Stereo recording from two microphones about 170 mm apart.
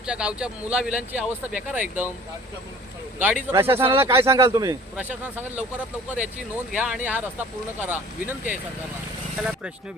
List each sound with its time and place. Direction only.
0.0 s a man's voice: 5° right (ahead or behind)
3.2 s a man's voice: 10° right (ahead or behind)
4.9 s a man's voice: 10° right (ahead or behind)
6.7 s a man's voice: 5° right (ahead or behind)